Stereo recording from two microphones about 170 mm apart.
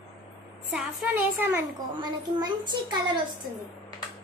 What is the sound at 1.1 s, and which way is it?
Speech, 10° right (ahead or behind).